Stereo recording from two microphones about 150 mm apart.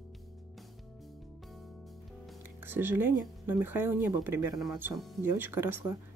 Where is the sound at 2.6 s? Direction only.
15° right (ahead or behind).